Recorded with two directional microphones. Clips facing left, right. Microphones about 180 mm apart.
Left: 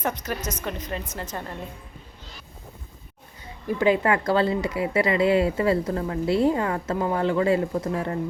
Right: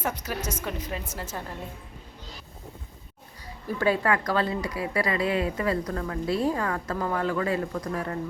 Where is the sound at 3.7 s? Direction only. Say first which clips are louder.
Left 4 dB; 15° left (ahead or behind).